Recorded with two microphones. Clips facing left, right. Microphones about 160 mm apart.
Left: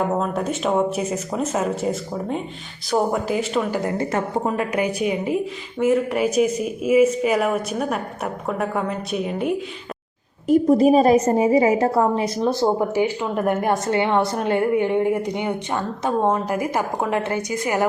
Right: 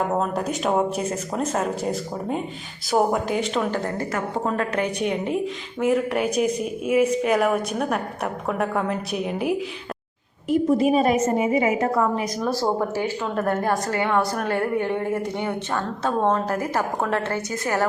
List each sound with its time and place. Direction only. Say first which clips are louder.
0.2 s a woman's voice: left 1 dB; centre (ahead or behind)
10.5 s a woman's voice: left 4 dB; 40° left (ahead or behind); by 17.8 s 15° left (ahead or behind)